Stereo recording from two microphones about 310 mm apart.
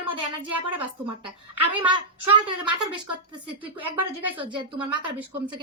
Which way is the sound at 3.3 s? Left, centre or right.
Centre.